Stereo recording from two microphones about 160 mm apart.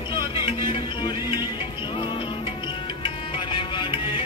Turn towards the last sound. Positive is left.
turn(degrees=30)  # may be behind; listen again after turning